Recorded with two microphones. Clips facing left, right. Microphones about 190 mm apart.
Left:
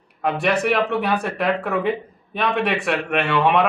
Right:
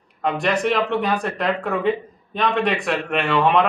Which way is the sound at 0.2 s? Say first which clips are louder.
Even; 5° left (ahead or behind).